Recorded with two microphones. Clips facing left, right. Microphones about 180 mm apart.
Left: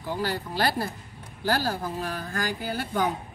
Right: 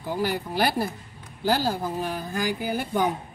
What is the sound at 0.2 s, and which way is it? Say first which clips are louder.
A woman's voice: right 3 dB; 15° right (ahead or behind).